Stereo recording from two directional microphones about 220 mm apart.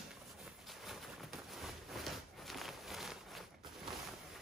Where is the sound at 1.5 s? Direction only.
Centre (ahead or behind).